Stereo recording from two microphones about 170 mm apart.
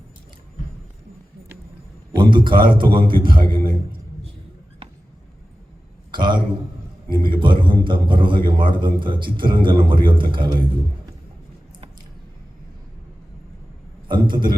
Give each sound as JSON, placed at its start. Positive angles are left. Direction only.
{"t": 2.1, "sound": "a man's voice", "side_deg": -30}
{"t": 6.1, "sound": "a man's voice", "side_deg": -25}
{"t": 14.1, "sound": "a man's voice", "side_deg": -25}